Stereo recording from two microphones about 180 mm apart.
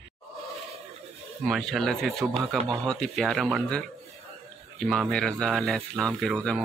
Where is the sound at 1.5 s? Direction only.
Centre (ahead or behind).